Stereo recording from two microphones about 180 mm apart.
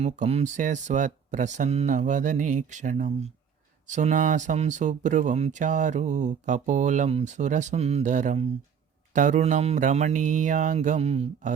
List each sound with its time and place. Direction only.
0.0 s speech: 35° right (ahead or behind)